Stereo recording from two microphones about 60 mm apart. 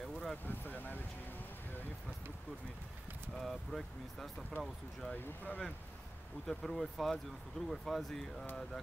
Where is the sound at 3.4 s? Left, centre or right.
Centre.